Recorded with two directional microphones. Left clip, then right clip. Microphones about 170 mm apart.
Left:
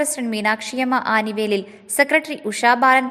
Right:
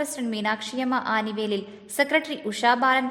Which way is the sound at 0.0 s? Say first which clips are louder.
Left 6 dB; 15° left (ahead or behind).